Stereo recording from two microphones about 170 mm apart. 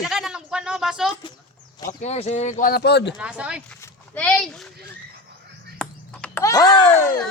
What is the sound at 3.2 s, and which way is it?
Speech, 5° right (ahead or behind).